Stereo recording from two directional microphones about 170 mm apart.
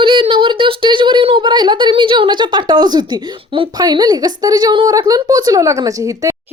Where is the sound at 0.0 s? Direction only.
30° right (ahead or behind).